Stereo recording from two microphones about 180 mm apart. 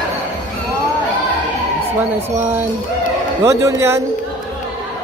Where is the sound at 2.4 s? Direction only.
10° right (ahead or behind).